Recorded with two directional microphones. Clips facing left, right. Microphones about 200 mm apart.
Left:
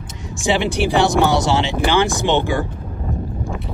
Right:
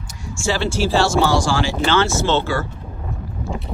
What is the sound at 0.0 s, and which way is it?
Speech, 20° left (ahead or behind).